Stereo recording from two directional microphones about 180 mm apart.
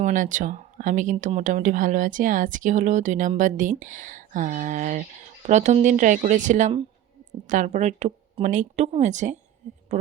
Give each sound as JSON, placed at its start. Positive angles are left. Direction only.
{"t": 0.0, "sound": "speech", "side_deg": -45}